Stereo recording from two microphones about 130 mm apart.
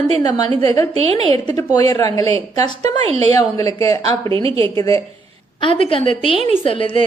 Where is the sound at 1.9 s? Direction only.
30° left (ahead or behind).